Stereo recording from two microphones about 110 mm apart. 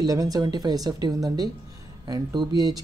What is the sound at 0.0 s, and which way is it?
Speech, 35° right (ahead or behind).